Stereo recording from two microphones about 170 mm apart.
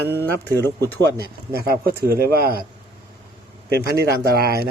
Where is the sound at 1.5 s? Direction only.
60° right (ahead or behind).